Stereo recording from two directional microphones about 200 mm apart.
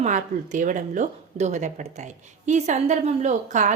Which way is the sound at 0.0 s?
40° right (ahead or behind).